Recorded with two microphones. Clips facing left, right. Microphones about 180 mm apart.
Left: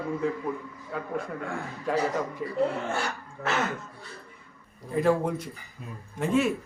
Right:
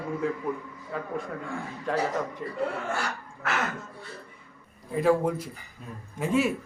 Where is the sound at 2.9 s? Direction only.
25° left (ahead or behind).